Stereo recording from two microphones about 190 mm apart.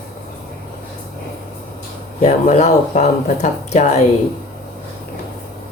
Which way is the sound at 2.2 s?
35° left (ahead or behind).